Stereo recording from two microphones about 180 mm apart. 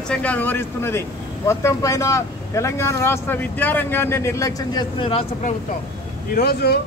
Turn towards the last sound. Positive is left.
turn(degrees=65)  # may be behind; listen again after turning